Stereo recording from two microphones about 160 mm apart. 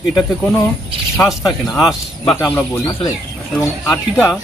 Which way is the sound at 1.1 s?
Centre (ahead or behind).